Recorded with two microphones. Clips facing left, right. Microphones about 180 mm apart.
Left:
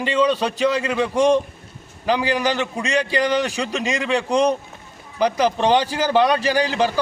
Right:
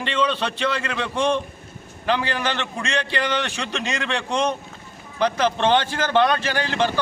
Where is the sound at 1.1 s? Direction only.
40° left (ahead or behind).